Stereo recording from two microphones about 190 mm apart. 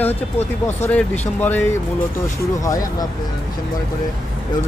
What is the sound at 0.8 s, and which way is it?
Speech, 10° left (ahead or behind).